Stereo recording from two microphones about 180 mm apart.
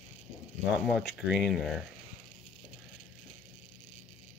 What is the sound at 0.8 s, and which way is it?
Speech, centre (ahead or behind).